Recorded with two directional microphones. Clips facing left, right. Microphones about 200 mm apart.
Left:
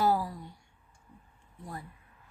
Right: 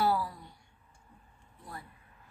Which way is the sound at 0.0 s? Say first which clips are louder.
Left 2 dB; 40° left (ahead or behind).